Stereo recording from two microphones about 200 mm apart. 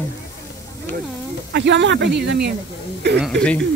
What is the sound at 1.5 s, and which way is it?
Speech, 60° right (ahead or behind).